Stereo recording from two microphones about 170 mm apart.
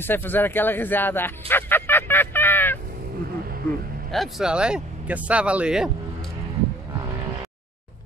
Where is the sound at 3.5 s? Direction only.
60° right (ahead or behind).